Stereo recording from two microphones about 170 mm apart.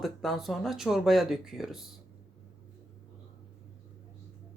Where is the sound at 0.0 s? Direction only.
Centre (ahead or behind).